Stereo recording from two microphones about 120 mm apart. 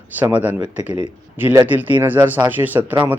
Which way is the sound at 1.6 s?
15° right (ahead or behind).